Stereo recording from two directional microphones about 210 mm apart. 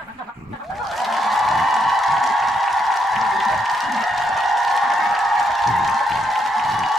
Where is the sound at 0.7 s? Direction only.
Centre (ahead or behind).